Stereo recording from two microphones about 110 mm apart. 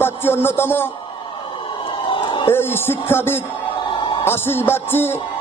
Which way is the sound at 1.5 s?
45° left (ahead or behind).